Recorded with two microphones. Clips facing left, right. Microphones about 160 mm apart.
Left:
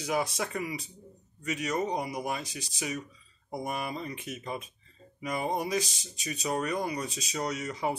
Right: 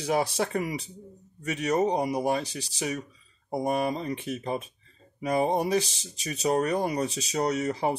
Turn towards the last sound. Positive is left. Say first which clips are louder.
# right 5 dB
turn(degrees=-35)  # may be behind; listen again after turning